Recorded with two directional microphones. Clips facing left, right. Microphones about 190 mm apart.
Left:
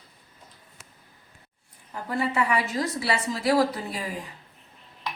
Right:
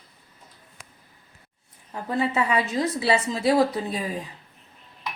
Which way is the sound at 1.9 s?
20° right (ahead or behind).